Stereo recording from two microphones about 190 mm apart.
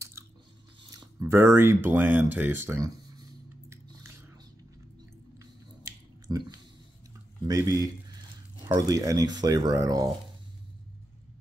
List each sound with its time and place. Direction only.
0.2 s biting: 15° right (ahead or behind)
0.9 s a sound: 15° right (ahead or behind)
5.4 s chewing: 15° right (ahead or behind)
7.4 s speech: 20° right (ahead or behind)